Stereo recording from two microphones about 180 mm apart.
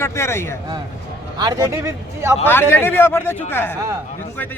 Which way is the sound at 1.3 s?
20° right (ahead or behind).